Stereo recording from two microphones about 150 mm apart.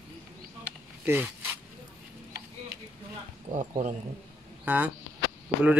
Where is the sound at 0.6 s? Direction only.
10° right (ahead or behind).